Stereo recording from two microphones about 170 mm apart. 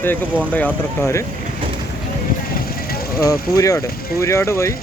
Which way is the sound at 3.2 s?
20° left (ahead or behind).